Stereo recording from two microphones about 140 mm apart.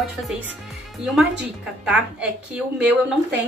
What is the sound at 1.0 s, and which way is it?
A woman's voice, centre (ahead or behind).